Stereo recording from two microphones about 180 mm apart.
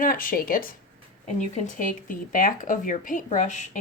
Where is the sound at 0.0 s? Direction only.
50° left (ahead or behind).